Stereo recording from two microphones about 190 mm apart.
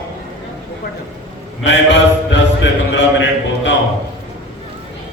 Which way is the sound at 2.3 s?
70° left (ahead or behind).